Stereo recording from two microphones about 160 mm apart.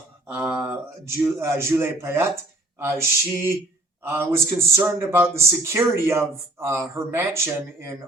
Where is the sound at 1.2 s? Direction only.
15° right (ahead or behind).